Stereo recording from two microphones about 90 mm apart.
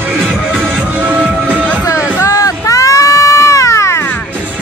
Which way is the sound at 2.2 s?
35° left (ahead or behind).